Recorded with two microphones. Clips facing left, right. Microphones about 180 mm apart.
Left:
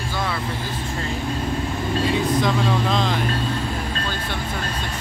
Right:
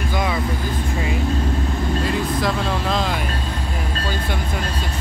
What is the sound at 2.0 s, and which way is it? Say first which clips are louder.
Speech: left 3 dB; centre (ahead or behind).